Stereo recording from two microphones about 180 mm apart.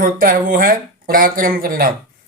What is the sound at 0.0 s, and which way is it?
Speech, 50° right (ahead or behind).